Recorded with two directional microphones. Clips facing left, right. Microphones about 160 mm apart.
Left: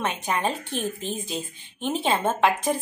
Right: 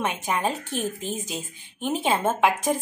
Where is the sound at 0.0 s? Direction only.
10° right (ahead or behind).